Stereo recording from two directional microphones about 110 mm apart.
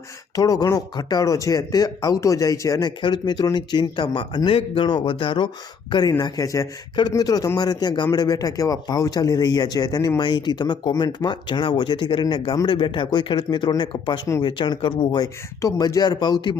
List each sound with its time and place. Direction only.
0.3 s speech: 35° left (ahead or behind)
3.0 s a man's voice: 45° left (ahead or behind)
5.9 s a man's voice: 40° left (ahead or behind)
15.6 s speech: 35° left (ahead or behind)